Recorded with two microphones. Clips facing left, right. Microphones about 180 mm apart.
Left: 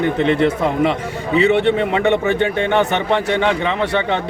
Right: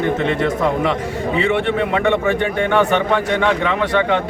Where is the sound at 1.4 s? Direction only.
20° left (ahead or behind).